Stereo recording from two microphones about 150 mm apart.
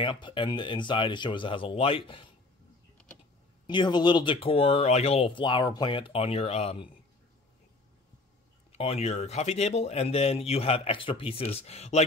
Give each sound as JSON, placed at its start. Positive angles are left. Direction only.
{"t": 0.0, "sound": "speech", "side_deg": 35}
{"t": 3.6, "sound": "speech", "side_deg": 30}
{"t": 8.7, "sound": "speech", "side_deg": 45}